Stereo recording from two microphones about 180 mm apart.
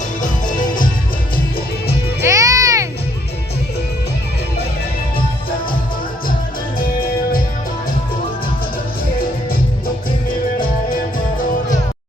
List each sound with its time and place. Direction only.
0.2 s music: 45° left (ahead or behind)
2.2 s music: 20° right (ahead or behind)